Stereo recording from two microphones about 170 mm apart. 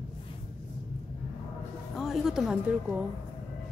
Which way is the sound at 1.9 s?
Centre (ahead or behind).